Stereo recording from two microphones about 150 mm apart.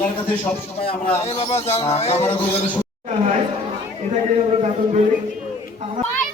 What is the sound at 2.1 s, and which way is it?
Speech, 15° left (ahead or behind).